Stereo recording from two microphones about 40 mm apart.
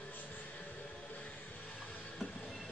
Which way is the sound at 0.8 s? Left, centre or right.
Left.